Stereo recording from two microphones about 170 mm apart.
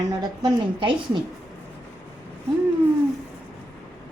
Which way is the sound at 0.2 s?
25° right (ahead or behind).